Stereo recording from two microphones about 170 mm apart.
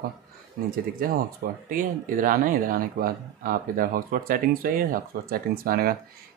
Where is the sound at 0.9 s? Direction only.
55° right (ahead or behind).